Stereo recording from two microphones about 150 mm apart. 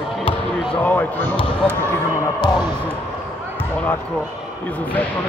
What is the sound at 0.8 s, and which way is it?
Speech, 10° left (ahead or behind).